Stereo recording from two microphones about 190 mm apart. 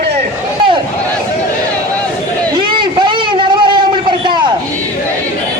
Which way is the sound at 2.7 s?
25° right (ahead or behind).